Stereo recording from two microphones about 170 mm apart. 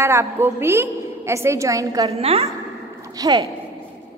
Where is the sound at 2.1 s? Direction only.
35° right (ahead or behind).